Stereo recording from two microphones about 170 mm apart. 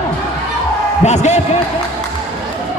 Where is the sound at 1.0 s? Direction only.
40° left (ahead or behind).